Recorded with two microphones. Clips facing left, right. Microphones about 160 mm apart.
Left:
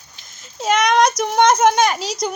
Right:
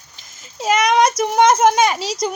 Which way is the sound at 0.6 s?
5° right (ahead or behind).